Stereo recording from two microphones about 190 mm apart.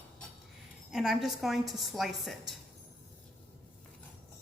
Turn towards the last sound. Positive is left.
turn(degrees=0)  # may be behind; listen again after turning